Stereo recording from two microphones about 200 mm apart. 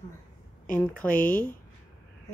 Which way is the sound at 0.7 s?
5° left (ahead or behind).